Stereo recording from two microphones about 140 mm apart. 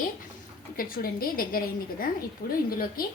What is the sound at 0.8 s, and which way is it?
A woman's voice, 90° left.